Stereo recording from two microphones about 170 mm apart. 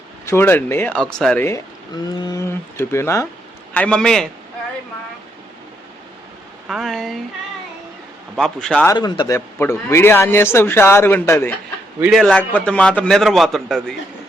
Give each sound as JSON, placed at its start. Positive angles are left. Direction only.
{"t": 0.3, "sound": "speech", "side_deg": 15}
{"t": 2.1, "sound": "a man's voice", "side_deg": 25}
{"t": 6.7, "sound": "a man's voice", "side_deg": 0}
{"t": 8.4, "sound": "a man's voice", "side_deg": 5}
{"t": 8.9, "sound": "speech", "side_deg": 25}
{"t": 11.9, "sound": "a man's voice", "side_deg": -5}
{"t": 12.2, "sound": "a man's voice", "side_deg": 5}